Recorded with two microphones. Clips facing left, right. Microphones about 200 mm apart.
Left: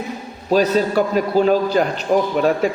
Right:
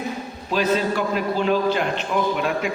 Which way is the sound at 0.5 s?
40° left (ahead or behind).